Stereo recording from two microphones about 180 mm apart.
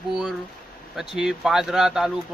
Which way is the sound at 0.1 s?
Centre (ahead or behind).